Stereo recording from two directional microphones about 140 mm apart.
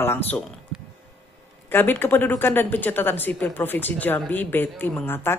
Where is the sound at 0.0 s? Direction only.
15° left (ahead or behind).